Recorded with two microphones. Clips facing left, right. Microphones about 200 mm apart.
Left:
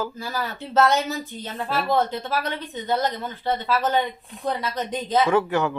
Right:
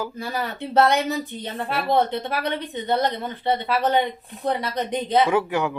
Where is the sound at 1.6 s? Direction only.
15° right (ahead or behind).